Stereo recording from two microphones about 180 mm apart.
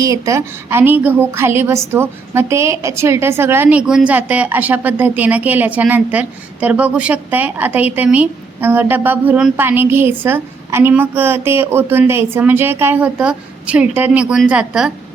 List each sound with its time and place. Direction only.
0.0 s a woman's voice: 15° right (ahead or behind)